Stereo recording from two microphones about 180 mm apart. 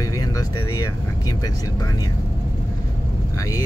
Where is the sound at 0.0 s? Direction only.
20° left (ahead or behind).